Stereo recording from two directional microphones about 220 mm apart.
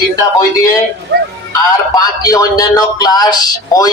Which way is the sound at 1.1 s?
50° right (ahead or behind).